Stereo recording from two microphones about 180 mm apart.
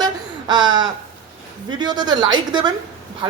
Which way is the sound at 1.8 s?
25° right (ahead or behind).